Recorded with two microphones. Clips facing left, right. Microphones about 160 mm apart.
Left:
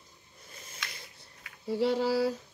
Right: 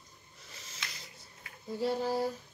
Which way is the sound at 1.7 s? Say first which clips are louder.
Left 4 dB; 90° left.